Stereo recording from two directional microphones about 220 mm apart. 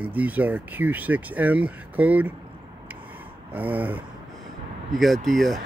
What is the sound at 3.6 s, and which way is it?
Speech, 10° right (ahead or behind).